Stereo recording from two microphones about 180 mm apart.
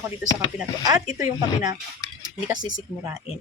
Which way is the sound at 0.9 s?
20° right (ahead or behind).